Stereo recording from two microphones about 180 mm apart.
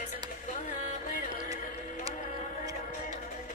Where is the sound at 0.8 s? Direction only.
45° left (ahead or behind).